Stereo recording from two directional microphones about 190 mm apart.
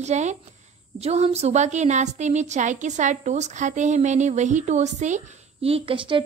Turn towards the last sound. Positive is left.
turn(degrees=-25)  # may be behind; listen again after turning